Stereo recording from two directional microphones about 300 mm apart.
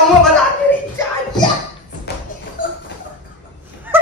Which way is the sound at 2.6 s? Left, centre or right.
Left.